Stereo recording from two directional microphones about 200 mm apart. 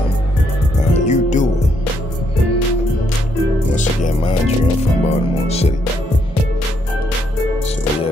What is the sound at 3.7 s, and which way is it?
Music, 35° left (ahead or behind).